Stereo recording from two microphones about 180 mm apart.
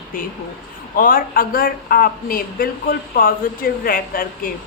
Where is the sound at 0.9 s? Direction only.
50° left (ahead or behind).